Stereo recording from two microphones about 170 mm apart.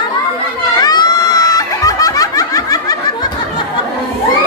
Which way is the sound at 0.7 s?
25° left (ahead or behind).